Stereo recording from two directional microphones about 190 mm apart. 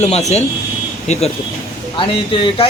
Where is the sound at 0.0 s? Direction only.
35° left (ahead or behind).